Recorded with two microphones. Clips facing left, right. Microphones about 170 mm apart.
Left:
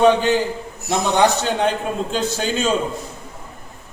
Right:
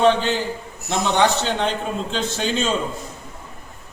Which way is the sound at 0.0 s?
10° left (ahead or behind).